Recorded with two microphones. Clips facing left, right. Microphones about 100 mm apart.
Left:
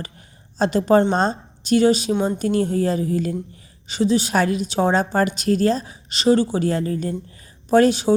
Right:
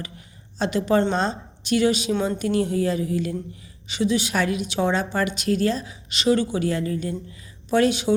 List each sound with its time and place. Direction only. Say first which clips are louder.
0.6 s a woman's voice: left 4 dB; 40° left (ahead or behind)
2.1 s a woman's voice: left 3 dB; 15° left (ahead or behind)
2.4 s a woman's voice: left 2 dB; 40° left (ahead or behind)